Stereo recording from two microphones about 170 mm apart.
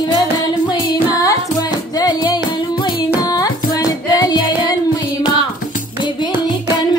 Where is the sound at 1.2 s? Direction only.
20° left (ahead or behind).